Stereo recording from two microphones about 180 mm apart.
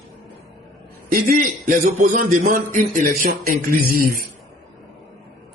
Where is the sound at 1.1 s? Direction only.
50° right (ahead or behind).